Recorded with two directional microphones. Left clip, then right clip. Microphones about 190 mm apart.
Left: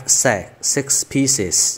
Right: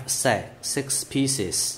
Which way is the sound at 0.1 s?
30° left (ahead or behind).